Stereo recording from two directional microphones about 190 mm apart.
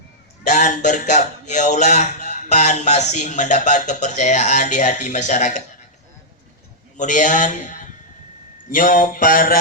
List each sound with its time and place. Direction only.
0.4 s speech: 40° left (ahead or behind)
6.9 s speech: 40° left (ahead or behind)
8.7 s a sound: 45° left (ahead or behind)